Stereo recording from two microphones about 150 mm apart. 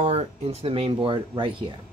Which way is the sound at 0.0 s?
45° right (ahead or behind).